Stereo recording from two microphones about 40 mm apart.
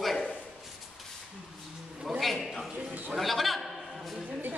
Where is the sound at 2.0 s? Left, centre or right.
Centre.